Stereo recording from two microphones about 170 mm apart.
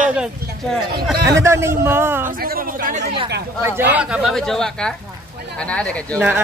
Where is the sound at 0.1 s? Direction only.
5° right (ahead or behind).